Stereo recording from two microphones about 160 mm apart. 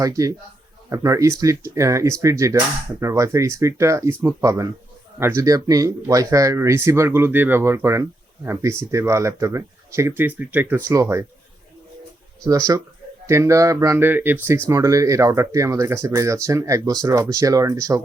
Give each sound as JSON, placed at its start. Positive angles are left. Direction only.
{"t": 0.0, "sound": "speech", "side_deg": -20}
{"t": 12.5, "sound": "speech", "side_deg": -20}